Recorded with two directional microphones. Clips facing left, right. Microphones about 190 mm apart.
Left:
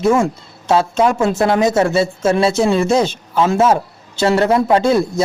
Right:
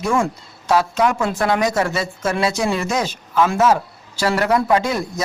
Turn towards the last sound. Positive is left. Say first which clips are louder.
# left 6 dB
turn(degrees=30)  # may be behind; listen again after turning